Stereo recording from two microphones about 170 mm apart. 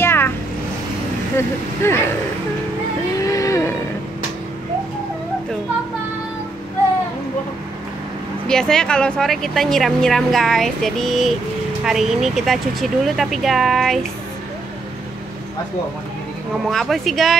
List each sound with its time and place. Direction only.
0.0 s a sound: 15° left (ahead or behind)
1.3 s speech: 15° left (ahead or behind)
3.2 s vehicle: 20° left (ahead or behind)
8.5 s speech: 5° left (ahead or behind)
16.6 s speech: centre (ahead or behind)